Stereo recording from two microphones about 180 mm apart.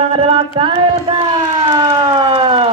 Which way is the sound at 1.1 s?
30° right (ahead or behind).